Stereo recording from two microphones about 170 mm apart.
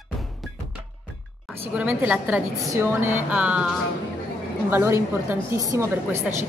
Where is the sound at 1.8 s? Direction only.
10° right (ahead or behind).